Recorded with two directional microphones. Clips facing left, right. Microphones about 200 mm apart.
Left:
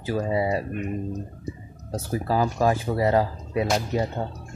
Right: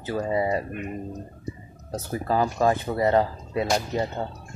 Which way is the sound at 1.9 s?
10° left (ahead or behind).